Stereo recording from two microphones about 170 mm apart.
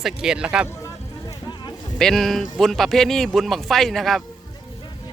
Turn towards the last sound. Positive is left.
turn(degrees=0)  # may be behind; listen again after turning